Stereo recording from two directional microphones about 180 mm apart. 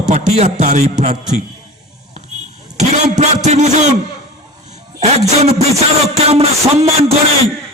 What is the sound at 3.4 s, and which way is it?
Speech, 40° right (ahead or behind).